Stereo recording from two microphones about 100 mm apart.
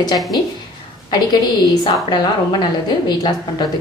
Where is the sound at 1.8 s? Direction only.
45° left (ahead or behind).